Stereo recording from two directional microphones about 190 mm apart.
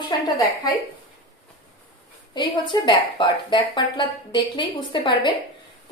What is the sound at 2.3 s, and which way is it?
A woman's voice, 25° left (ahead or behind).